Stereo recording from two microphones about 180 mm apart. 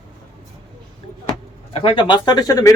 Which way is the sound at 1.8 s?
30° left (ahead or behind).